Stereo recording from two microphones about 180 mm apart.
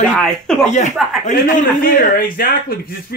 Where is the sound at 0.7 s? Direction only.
40° left (ahead or behind).